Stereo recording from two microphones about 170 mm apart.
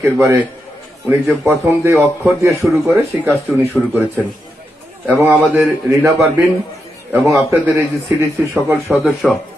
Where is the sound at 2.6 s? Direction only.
5° right (ahead or behind).